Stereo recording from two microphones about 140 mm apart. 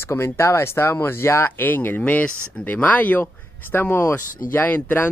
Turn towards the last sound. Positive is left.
turn(degrees=15)  # may be behind; listen again after turning